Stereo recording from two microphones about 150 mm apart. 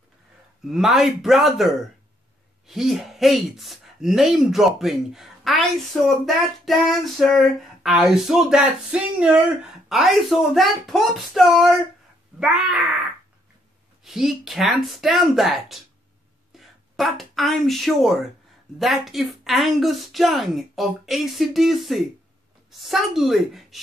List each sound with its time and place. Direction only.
0.7 s female singing: centre (ahead or behind)
14.0 s female singing: centre (ahead or behind)
16.5 s speech: centre (ahead or behind)
18.8 s female singing: centre (ahead or behind)